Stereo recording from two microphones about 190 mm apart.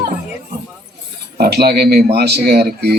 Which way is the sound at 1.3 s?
55° right (ahead or behind).